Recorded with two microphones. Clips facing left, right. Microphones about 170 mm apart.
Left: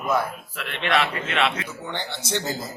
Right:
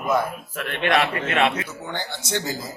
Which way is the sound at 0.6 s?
45° right (ahead or behind).